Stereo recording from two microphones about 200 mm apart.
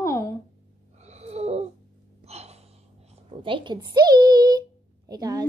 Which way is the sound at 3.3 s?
25° right (ahead or behind).